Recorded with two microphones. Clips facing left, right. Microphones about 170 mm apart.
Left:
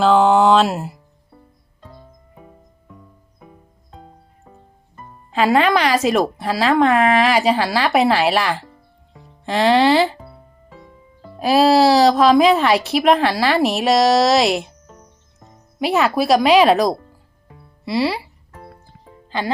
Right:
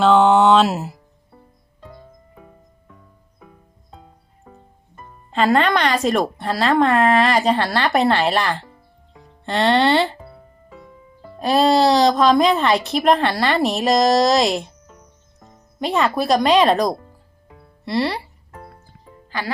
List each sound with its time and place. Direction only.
0.0 s speech: centre (ahead or behind)
5.3 s speech: 5° left (ahead or behind)
11.3 s speech: 5° left (ahead or behind)
15.8 s speech: 5° left (ahead or behind)
19.3 s speech: 25° left (ahead or behind)